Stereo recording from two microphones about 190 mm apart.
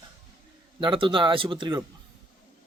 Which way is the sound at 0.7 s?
25° right (ahead or behind).